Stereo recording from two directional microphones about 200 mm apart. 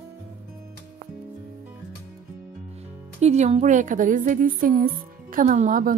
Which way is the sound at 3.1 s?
35° right (ahead or behind).